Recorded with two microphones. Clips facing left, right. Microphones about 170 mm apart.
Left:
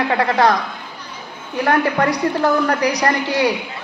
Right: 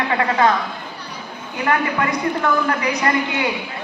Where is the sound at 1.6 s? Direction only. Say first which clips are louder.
Left 3 dB; 40° left (ahead or behind).